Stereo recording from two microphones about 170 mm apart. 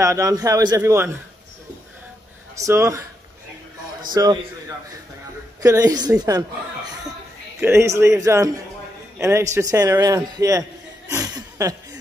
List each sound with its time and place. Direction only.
0.0 s a man's voice: 20° right (ahead or behind)
2.5 s speech: 15° right (ahead or behind)
4.1 s a man's voice: 25° right (ahead or behind)
5.6 s a man's voice: 20° right (ahead or behind)
7.6 s a man's voice: 15° right (ahead or behind)
11.1 s chuckle: 20° right (ahead or behind)